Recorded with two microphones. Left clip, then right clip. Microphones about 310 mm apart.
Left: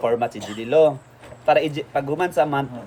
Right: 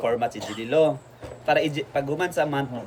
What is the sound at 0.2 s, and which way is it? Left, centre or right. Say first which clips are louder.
A man's voice: left 2 dB; centre.